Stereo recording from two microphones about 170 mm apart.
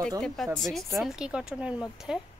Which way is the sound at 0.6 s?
Centre (ahead or behind).